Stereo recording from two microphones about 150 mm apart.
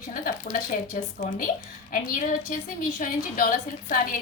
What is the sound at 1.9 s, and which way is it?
A woman's voice, 65° left (ahead or behind).